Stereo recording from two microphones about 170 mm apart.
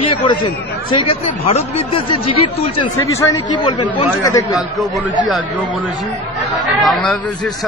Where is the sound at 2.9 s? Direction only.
20° left (ahead or behind).